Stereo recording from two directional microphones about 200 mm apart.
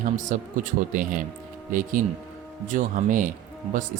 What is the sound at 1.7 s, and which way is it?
Speech, 40° right (ahead or behind).